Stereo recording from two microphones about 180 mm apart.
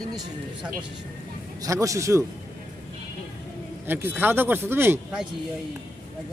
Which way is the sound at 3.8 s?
10° right (ahead or behind).